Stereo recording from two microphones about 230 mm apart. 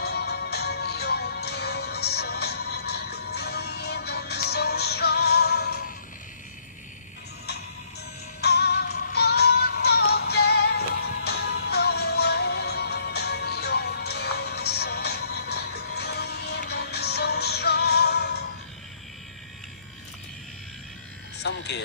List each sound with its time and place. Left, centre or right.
0.0 s music: left
8.4 s synthetic singing: left
21.4 s music: left